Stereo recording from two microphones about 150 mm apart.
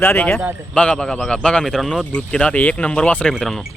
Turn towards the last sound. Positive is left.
turn(degrees=0)  # may be behind; listen again after turning